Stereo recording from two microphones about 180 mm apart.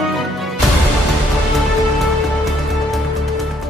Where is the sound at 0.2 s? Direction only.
Centre (ahead or behind).